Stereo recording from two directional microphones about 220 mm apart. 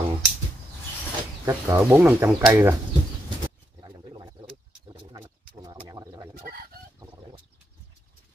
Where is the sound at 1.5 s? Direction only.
15° right (ahead or behind).